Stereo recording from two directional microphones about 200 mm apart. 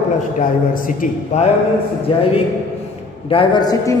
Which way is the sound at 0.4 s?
40° left (ahead or behind).